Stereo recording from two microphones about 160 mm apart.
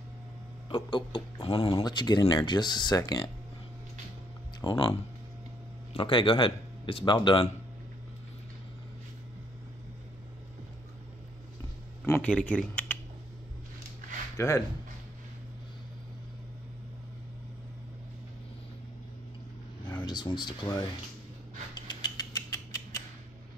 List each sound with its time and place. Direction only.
0.7 s a man's voice: 30° left (ahead or behind)
1.7 s speech: 25° left (ahead or behind)
4.6 s speech: 30° left (ahead or behind)
5.9 s a man's voice: 35° left (ahead or behind)
12.1 s speech: 10° left (ahead or behind)
14.3 s speech: 20° left (ahead or behind)
20.0 s speech: 30° left (ahead or behind)
21.7 s mechanisms: 25° left (ahead or behind)